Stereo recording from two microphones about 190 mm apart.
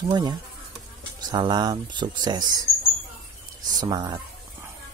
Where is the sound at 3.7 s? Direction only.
20° right (ahead or behind).